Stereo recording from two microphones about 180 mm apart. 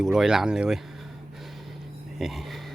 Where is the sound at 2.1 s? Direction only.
Centre (ahead or behind).